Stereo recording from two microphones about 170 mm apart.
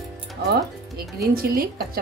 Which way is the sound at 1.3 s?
60° right (ahead or behind).